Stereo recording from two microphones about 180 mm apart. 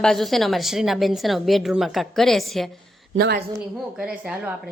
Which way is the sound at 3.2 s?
65° right (ahead or behind).